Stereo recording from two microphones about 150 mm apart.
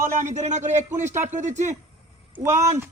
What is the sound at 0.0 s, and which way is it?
Speech, 55° right (ahead or behind).